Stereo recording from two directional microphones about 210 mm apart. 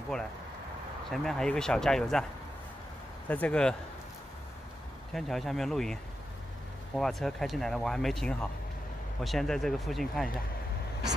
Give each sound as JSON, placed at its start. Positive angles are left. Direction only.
{"t": 0.1, "sound": "speech", "side_deg": 5}
{"t": 3.3, "sound": "speech", "side_deg": 5}
{"t": 5.1, "sound": "speech", "side_deg": 0}
{"t": 7.0, "sound": "speech", "side_deg": 0}